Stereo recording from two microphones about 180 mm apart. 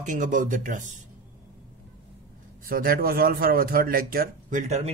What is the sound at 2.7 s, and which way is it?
Speech, 55° right (ahead or behind).